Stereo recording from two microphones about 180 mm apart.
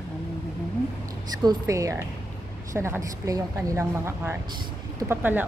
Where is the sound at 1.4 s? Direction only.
15° right (ahead or behind).